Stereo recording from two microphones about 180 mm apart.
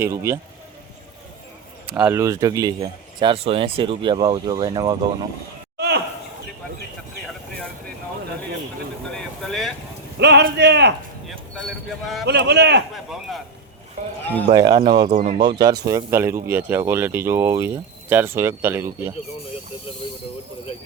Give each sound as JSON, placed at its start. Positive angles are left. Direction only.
{"t": 0.0, "sound": "speech", "side_deg": -15}
{"t": 1.9, "sound": "speech", "side_deg": -10}
{"t": 3.2, "sound": "speech", "side_deg": -30}
{"t": 5.7, "sound": "a sound", "side_deg": -65}
{"t": 9.0, "sound": "vehicle", "side_deg": 0}
{"t": 10.2, "sound": "speech", "side_deg": -70}
{"t": 11.3, "sound": "speech", "side_deg": 0}
{"t": 12.2, "sound": "speech", "side_deg": -65}
{"t": 14.5, "sound": "speech", "side_deg": -20}
{"t": 15.1, "sound": "speech", "side_deg": -40}
{"t": 15.4, "sound": "speech", "side_deg": -20}